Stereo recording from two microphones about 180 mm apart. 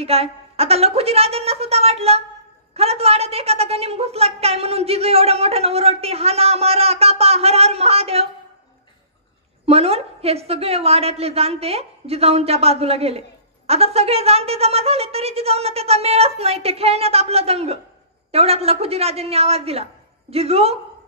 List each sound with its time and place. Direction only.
0.0 s a woman's voice: 35° right (ahead or behind)
9.7 s a woman's voice: 35° right (ahead or behind)